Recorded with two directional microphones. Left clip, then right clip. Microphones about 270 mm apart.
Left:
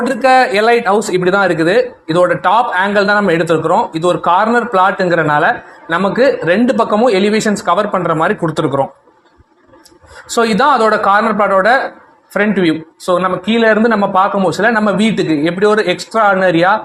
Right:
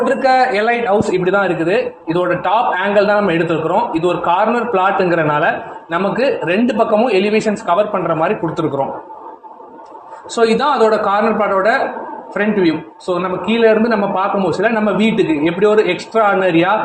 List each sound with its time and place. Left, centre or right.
0.0 s a man's voice: left
10.3 s a man's voice: left